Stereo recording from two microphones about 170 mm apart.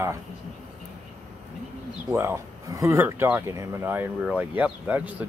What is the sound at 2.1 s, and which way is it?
Speech, 15° right (ahead or behind).